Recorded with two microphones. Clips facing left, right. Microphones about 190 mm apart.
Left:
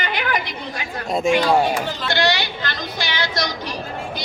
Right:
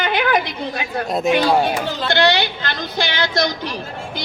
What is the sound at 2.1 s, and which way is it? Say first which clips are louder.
A woman's voice: right 4 dB; 60° right (ahead or behind).